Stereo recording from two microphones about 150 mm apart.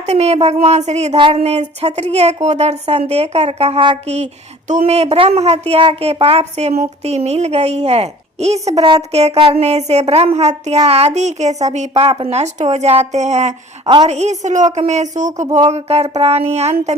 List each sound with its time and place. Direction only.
0.0 s speech: 45° right (ahead or behind)
15.7 s speech: 45° right (ahead or behind)